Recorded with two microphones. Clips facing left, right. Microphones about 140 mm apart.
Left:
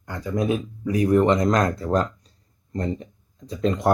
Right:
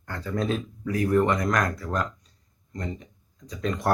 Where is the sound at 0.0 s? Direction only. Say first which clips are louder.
Left 4 dB; 10° left (ahead or behind).